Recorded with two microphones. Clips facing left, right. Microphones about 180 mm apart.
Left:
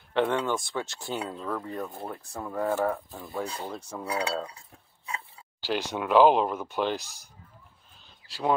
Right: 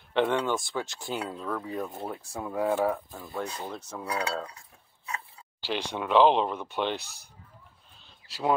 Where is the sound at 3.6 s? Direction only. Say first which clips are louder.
Left 1 dB; 10° left (ahead or behind).